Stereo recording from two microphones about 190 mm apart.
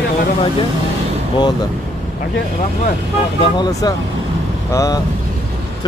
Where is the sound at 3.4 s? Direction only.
20° left (ahead or behind).